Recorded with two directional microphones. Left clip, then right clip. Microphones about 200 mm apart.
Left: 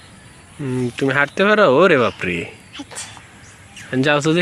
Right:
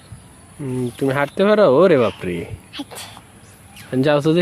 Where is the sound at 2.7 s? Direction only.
45° right (ahead or behind).